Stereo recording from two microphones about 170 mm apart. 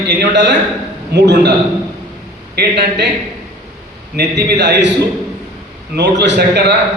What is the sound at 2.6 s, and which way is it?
Speech, 90° right.